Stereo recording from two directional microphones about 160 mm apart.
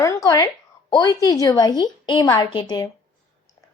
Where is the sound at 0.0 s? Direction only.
20° left (ahead or behind).